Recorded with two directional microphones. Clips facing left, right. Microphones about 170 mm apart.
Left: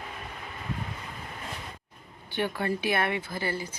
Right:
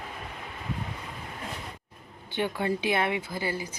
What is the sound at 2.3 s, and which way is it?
Speech, 20° right (ahead or behind).